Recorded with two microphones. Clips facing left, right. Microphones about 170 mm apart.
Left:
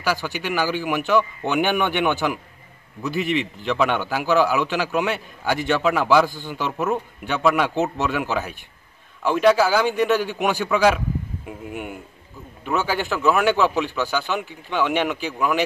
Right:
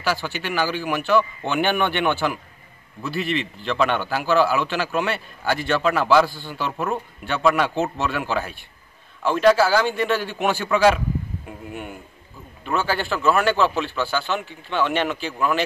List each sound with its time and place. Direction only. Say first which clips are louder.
0.0 s a man's voice: left 1 dB; 10° left (ahead or behind)